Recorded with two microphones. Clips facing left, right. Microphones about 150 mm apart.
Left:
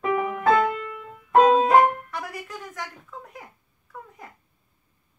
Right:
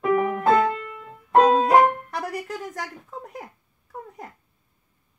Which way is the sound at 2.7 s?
40° right (ahead or behind).